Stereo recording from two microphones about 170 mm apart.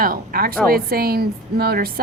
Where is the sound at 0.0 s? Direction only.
60° right (ahead or behind).